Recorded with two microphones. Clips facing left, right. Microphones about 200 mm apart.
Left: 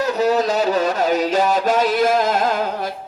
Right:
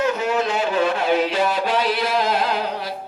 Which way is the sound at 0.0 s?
40° left (ahead or behind).